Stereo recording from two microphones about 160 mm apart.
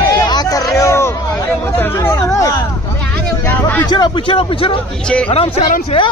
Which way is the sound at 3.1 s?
10° left (ahead or behind).